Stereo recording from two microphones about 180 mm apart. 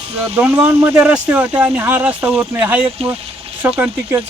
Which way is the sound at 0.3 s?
10° right (ahead or behind).